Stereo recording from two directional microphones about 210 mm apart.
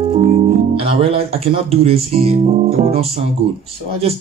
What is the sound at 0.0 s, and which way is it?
Speech, 25° right (ahead or behind).